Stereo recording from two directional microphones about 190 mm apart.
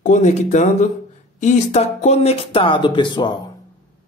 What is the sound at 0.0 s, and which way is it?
Speech, 40° left (ahead or behind).